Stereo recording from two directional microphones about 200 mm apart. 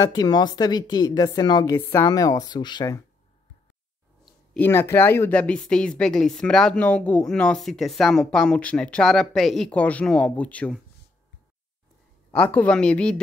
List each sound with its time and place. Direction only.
0.0 s a woman's voice: 20° left (ahead or behind)
4.6 s speech: 10° left (ahead or behind)
12.3 s speech: 10° left (ahead or behind)